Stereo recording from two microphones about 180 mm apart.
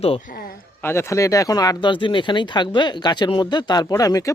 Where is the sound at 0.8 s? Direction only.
15° left (ahead or behind).